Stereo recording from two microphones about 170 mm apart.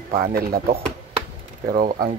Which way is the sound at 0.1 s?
60° right (ahead or behind).